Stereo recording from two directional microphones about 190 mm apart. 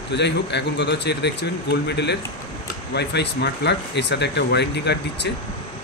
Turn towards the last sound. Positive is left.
turn(degrees=65)  # may be behind; listen again after turning